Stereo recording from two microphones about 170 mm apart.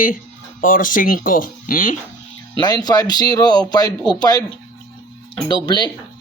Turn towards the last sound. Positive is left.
turn(degrees=25)  # may be behind; listen again after turning